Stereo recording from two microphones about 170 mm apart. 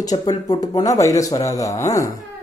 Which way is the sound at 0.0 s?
20° left (ahead or behind).